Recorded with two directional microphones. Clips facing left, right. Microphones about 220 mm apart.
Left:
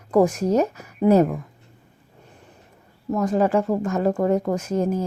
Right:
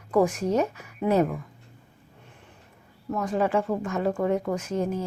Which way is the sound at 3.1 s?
40° left (ahead or behind).